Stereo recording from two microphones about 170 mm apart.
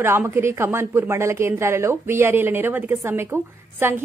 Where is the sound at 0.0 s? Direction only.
10° right (ahead or behind).